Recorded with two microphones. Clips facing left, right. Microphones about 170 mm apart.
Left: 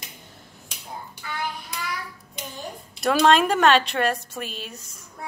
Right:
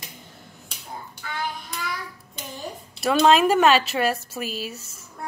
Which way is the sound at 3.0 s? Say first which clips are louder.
Right 1 dB; 5° right (ahead or behind).